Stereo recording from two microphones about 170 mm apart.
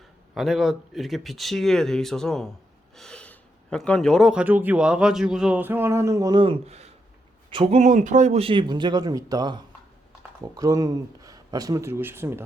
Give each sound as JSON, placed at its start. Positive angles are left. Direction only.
{"t": 0.3, "sound": "speech", "side_deg": 0}